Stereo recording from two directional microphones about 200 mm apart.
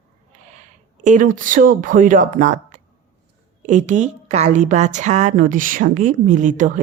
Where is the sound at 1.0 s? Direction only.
40° right (ahead or behind).